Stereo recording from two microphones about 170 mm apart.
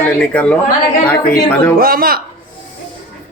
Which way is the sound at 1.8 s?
60° right (ahead or behind).